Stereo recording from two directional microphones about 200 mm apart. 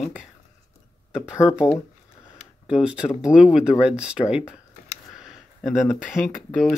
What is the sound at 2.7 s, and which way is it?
Speech, 5° right (ahead or behind).